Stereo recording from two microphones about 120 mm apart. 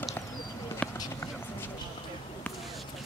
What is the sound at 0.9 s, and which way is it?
Run, 30° left (ahead or behind).